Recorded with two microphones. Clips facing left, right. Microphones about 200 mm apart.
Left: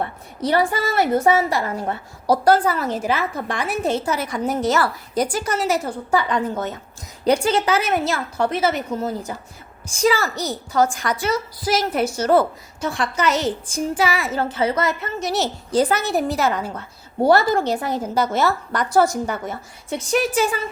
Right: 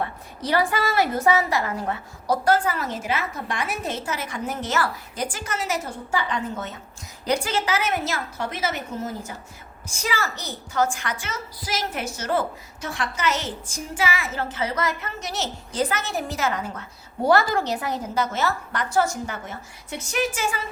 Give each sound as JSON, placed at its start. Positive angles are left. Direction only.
{"t": 0.7, "sound": "a woman's voice", "side_deg": 25}